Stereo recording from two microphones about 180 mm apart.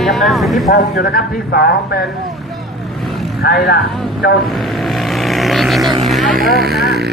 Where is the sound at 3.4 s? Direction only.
60° left (ahead or behind).